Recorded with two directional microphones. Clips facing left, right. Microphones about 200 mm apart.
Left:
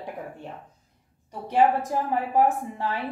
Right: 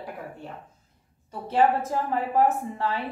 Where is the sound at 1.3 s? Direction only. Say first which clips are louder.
Left 1 dB; 15° left (ahead or behind).